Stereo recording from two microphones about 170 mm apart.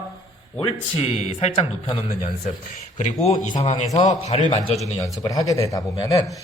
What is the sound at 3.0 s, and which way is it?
Speech, 45° left (ahead or behind).